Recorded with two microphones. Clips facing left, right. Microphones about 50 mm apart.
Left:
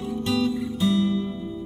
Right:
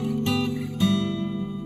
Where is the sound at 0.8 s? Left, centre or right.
Right.